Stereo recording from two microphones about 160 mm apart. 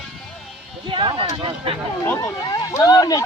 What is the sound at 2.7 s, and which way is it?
Speech, 20° left (ahead or behind).